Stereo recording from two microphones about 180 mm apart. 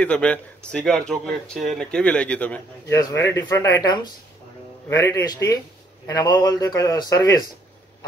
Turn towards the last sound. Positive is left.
turn(degrees=20)  # may be behind; listen again after turning